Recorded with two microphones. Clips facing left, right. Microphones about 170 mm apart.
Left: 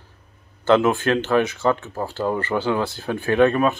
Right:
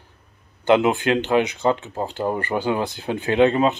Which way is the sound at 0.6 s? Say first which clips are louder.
Even; 15° right (ahead or behind).